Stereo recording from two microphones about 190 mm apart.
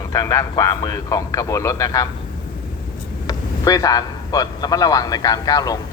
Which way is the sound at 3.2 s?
20° left (ahead or behind).